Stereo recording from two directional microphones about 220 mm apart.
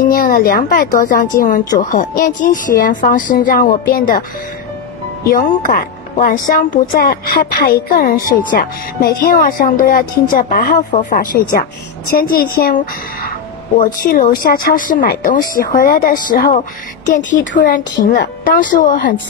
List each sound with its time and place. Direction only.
0.0 s speech: 40° left (ahead or behind)
5.2 s speech: 40° left (ahead or behind)